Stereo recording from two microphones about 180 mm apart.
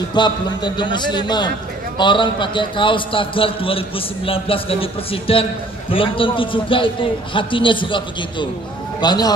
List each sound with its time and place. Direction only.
0.1 s a man's voice: 25° left (ahead or behind)